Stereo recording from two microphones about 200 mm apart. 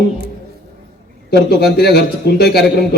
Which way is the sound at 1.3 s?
55° left (ahead or behind).